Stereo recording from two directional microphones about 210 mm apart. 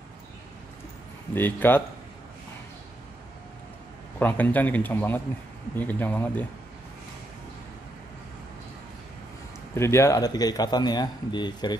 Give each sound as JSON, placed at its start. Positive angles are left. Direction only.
{"t": 1.3, "sound": "a man's voice", "side_deg": 10}
{"t": 4.2, "sound": "a man's voice", "side_deg": 10}
{"t": 9.8, "sound": "speech", "side_deg": 15}